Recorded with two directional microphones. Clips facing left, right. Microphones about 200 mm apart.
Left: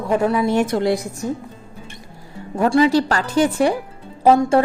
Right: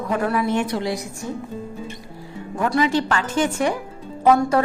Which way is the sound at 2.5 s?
30° left (ahead or behind).